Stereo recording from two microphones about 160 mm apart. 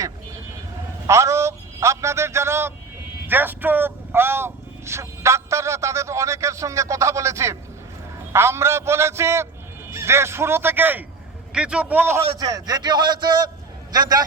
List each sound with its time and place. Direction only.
1.0 s a man's voice: 20° right (ahead or behind)
12.2 s a man's voice: 25° right (ahead or behind)